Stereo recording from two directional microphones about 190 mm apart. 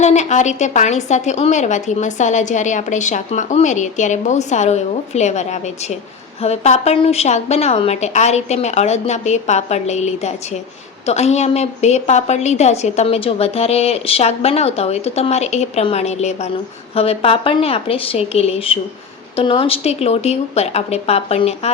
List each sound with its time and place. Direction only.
0.0 s a woman's voice: 35° left (ahead or behind)